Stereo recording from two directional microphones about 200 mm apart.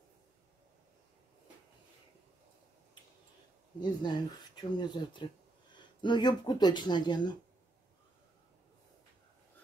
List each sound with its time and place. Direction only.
3.8 s speech: 20° left (ahead or behind)